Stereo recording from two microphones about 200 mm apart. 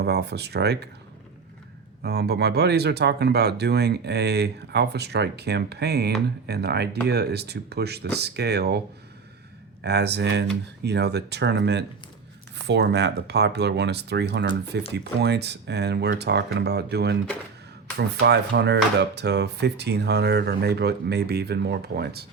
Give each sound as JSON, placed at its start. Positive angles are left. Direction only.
{"t": 0.0, "sound": "speech", "side_deg": -55}
{"t": 2.0, "sound": "speech", "side_deg": -55}
{"t": 9.8, "sound": "speech", "side_deg": -55}